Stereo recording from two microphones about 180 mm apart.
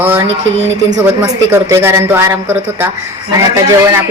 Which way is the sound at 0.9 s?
15° right (ahead or behind).